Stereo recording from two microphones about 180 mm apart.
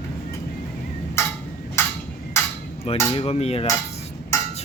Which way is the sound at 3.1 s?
35° left (ahead or behind).